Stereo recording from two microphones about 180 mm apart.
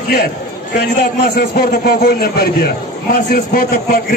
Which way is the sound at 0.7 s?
60° left (ahead or behind).